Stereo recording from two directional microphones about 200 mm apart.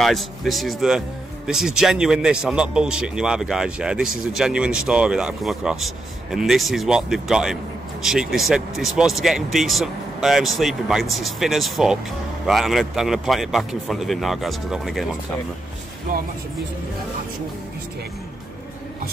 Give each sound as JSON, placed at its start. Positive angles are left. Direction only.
{"t": 0.0, "sound": "speech", "side_deg": 0}
{"t": 16.1, "sound": "speech", "side_deg": -45}